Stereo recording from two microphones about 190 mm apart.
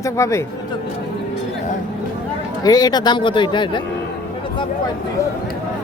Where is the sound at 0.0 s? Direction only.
15° left (ahead or behind).